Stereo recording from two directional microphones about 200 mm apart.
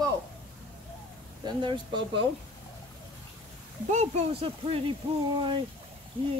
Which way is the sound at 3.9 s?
30° right (ahead or behind).